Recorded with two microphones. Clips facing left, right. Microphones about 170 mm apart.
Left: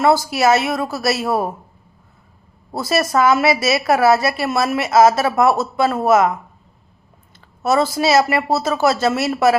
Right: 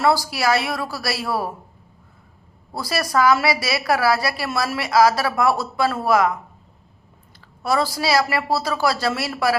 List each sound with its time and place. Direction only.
0.0 s a woman's voice: 20° left (ahead or behind)
2.7 s a woman's voice: 25° left (ahead or behind)
7.6 s a woman's voice: 25° left (ahead or behind)